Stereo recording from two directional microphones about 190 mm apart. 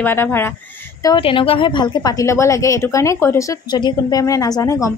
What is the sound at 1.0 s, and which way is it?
A woman's voice, 25° left (ahead or behind).